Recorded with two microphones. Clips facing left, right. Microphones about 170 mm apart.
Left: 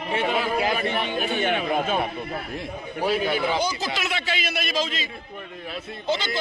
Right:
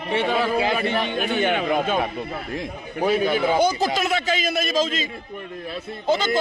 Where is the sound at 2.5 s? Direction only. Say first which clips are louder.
Right 2 dB; 90° right.